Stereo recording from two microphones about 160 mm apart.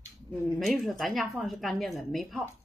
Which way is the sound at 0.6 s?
Centre (ahead or behind).